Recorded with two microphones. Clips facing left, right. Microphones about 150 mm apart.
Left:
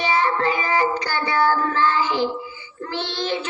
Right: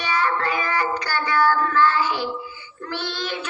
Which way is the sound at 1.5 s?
25° left (ahead or behind).